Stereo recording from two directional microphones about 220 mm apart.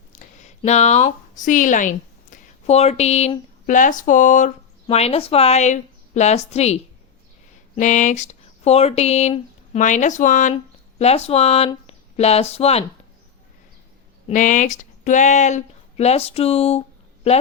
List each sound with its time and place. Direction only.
0.1 s a woman's voice: 35° left (ahead or behind)
7.8 s speech: 35° left (ahead or behind)
14.3 s speech: 35° left (ahead or behind)